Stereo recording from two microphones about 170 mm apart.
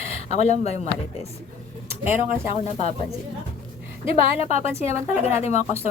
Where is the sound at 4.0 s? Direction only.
40° left (ahead or behind).